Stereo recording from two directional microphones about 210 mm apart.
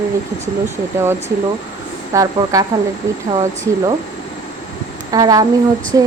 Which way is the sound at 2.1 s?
15° right (ahead or behind).